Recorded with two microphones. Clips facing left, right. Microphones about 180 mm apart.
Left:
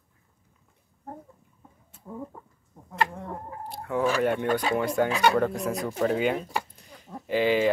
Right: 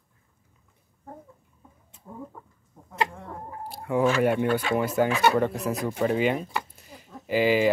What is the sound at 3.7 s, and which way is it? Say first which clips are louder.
Speech: right 2 dB; 10° right (ahead or behind).